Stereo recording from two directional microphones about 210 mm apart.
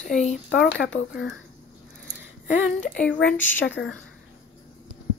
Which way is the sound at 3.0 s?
5° left (ahead or behind).